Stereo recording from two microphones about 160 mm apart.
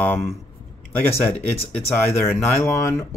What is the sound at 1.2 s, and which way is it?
Speech, 10° left (ahead or behind).